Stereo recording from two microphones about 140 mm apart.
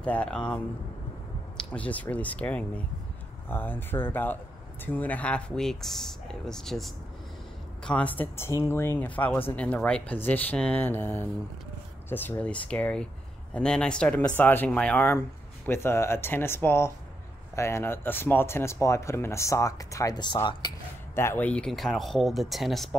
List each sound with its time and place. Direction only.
0.0 s speech: 10° left (ahead or behind)
1.6 s speech: 10° left (ahead or behind); by 20.3 s 30° left (ahead or behind)
21.1 s speech: 20° left (ahead or behind); by 22.9 s centre (ahead or behind)